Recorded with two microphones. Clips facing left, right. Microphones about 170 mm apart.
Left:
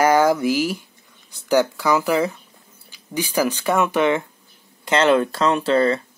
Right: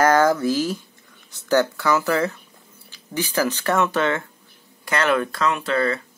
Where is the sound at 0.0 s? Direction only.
10° left (ahead or behind).